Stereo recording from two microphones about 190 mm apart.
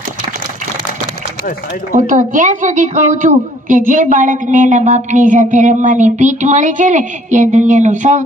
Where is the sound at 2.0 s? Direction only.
40° right (ahead or behind).